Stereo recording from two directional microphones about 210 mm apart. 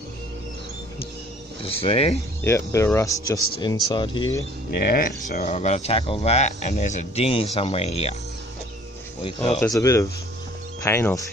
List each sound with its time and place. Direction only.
1.6 s speech: 25° left (ahead or behind)
2.4 s speech: 10° left (ahead or behind)
4.6 s speech: 50° left (ahead or behind); by 8.2 s 30° left (ahead or behind)
9.2 s speech: 25° left (ahead or behind)
9.6 s speech: 15° left (ahead or behind)